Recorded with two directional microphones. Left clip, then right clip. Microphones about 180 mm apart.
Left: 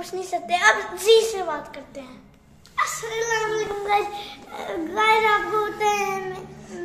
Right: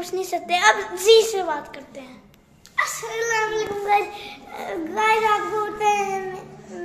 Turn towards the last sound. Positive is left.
turn(degrees=-5)  # may be behind; listen again after turning